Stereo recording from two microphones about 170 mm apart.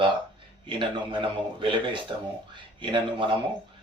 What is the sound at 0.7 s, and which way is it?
Speech, 30° right (ahead or behind).